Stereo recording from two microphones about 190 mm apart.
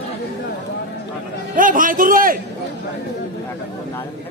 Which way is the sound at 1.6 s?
45° right (ahead or behind).